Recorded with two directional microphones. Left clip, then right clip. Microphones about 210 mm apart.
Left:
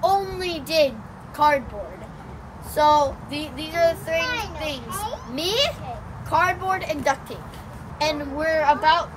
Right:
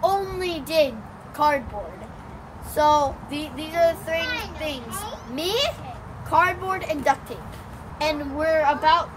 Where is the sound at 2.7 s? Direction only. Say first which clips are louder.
Left 1 dB; 10° right (ahead or behind).